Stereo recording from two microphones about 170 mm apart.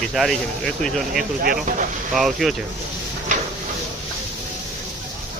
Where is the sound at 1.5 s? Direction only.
50° right (ahead or behind).